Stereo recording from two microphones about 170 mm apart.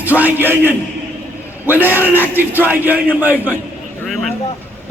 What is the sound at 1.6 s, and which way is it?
A man's voice, 10° right (ahead or behind).